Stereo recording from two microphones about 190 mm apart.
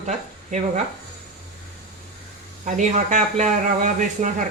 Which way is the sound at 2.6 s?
40° right (ahead or behind).